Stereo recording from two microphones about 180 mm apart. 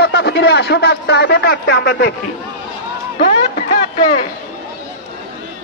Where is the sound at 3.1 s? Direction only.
45° left (ahead or behind).